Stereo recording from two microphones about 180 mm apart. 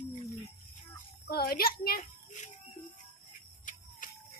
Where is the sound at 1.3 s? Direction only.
60° left (ahead or behind).